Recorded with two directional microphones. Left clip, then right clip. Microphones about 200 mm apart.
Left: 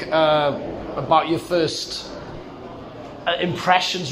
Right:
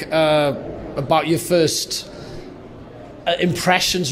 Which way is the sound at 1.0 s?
60° right (ahead or behind).